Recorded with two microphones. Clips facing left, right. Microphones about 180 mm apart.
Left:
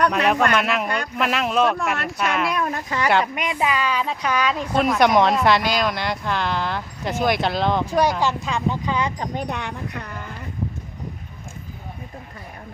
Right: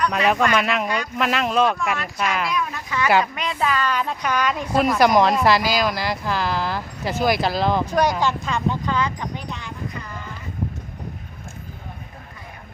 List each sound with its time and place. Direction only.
0.1 s speech: centre (ahead or behind)
2.5 s speech: 55° left (ahead or behind)
3.3 s speech: 15° left (ahead or behind)
9.1 s speech: 45° left (ahead or behind); by 10.1 s 65° left (ahead or behind)